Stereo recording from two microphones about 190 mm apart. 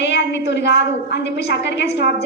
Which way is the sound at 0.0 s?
65° left (ahead or behind).